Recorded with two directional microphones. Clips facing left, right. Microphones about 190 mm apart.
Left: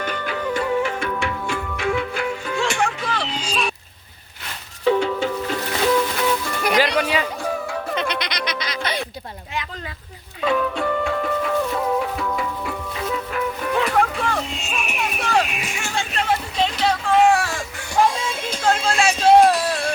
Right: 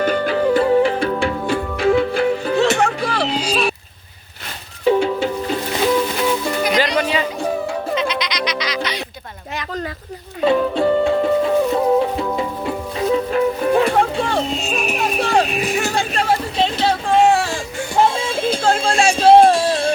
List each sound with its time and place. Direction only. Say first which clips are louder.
0.0 s music: right 9 dB; 35° right (ahead or behind)
3.5 s a sound: right 3 dB; 35° right (ahead or behind)
4.9 s music: right 3 dB; 15° right (ahead or behind)
6.7 s music: left 2 dB; 10° left (ahead or behind)
7.4 s music: right 4 dB; 30° right (ahead or behind)
7.9 s goat: right 3 dB; 60° left (ahead or behind)
9.5 s a sound: right 5 dB; 40° right (ahead or behind)
10.4 s music: right 6 dB; 30° right (ahead or behind)